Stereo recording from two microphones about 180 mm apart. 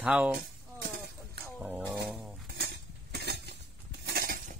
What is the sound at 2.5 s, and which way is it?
Cutlery, 65° right (ahead or behind).